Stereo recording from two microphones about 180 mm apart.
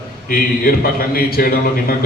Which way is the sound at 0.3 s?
55° left (ahead or behind).